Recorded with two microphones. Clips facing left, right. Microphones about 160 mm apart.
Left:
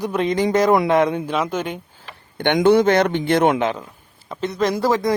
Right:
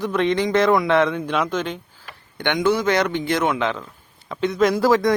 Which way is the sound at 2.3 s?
50° left (ahead or behind).